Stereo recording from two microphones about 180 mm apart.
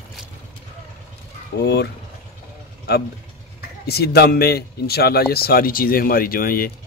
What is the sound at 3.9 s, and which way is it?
Speech, 65° left (ahead or behind).